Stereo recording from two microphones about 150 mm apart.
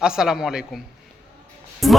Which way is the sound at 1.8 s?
Centre (ahead or behind).